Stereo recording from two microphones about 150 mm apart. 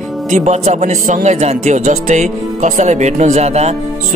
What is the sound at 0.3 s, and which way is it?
Speech, 50° right (ahead or behind).